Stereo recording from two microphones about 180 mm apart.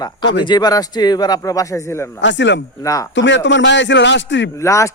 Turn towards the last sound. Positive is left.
turn(degrees=15)  # may be behind; listen again after turning